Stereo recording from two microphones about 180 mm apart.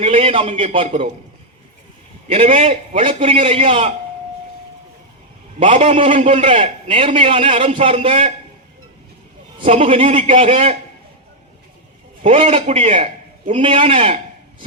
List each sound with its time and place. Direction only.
0.0 s a man's voice: 30° right (ahead or behind)
2.2 s a man's voice: 35° right (ahead or behind)
5.5 s a man's voice: 30° right (ahead or behind)
9.6 s a man's voice: 35° right (ahead or behind)
12.2 s a man's voice: 35° right (ahead or behind)